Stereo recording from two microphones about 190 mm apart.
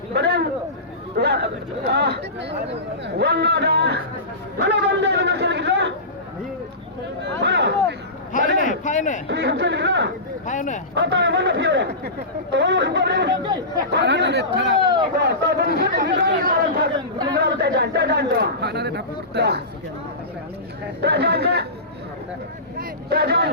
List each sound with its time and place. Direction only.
0.1 s a sound: 60° right (ahead or behind)
1.1 s speech: 60° right (ahead or behind)
7.2 s a sound: 65° right (ahead or behind)
8.3 s a sound: 40° left (ahead or behind)
9.2 s speech: 65° right (ahead or behind)
10.4 s speech: 40° left (ahead or behind)
10.9 s speech: 70° right (ahead or behind)
13.4 s speech: 20° right (ahead or behind)
13.9 s speech: 65° right (ahead or behind)
16.5 s a sound: 50° right (ahead or behind)
17.3 s speech: 55° right (ahead or behind)
21.0 s speech: 60° right (ahead or behind)
22.8 s speech: 55° right (ahead or behind)